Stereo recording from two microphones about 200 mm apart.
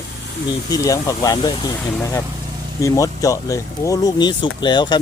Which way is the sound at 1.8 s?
10° left (ahead or behind).